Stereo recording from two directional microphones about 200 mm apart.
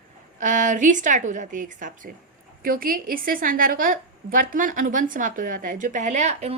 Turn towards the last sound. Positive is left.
turn(degrees=-35)  # may be behind; listen again after turning